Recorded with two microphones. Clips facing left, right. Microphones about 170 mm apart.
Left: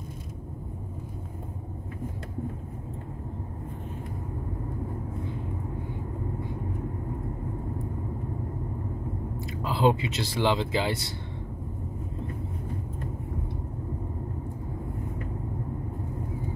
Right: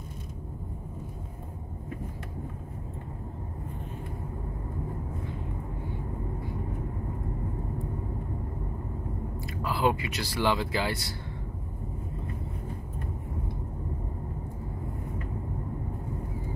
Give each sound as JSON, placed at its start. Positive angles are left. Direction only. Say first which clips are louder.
{"t": 9.6, "sound": "speech", "louder": "left 3 dB", "side_deg": 20}